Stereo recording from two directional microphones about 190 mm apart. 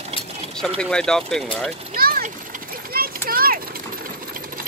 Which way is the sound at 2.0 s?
50° right (ahead or behind).